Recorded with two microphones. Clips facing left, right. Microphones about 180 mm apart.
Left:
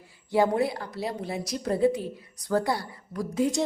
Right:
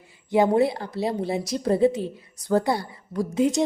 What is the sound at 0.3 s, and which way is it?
A woman's voice, 20° right (ahead or behind).